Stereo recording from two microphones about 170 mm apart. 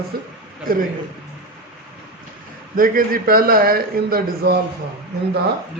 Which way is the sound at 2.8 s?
55° right (ahead or behind).